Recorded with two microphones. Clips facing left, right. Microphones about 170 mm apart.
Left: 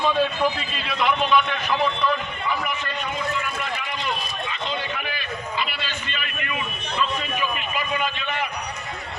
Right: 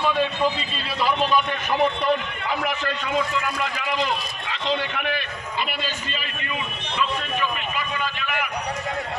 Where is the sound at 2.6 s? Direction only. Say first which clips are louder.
Right 3 dB; 90° right; by 5.2 s 65° right (ahead or behind).